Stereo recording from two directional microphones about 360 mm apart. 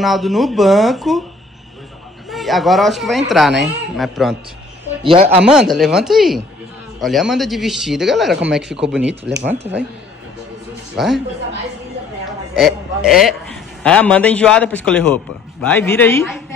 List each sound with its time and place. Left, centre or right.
0.0 s speech: centre
2.3 s speech: centre
5.0 s speech: centre
5.4 s speech: centre
11.0 s speech: centre
12.3 s a man's voice: centre